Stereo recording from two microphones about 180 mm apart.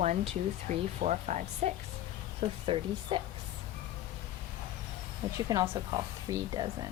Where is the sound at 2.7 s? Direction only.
30° right (ahead or behind).